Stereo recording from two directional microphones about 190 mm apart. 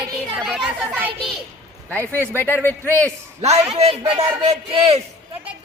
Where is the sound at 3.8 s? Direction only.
30° right (ahead or behind).